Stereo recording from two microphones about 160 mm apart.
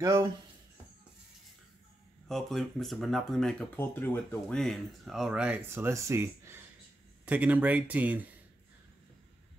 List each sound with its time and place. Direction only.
0.0 s speech: 25° right (ahead or behind)
2.2 s speech: centre (ahead or behind)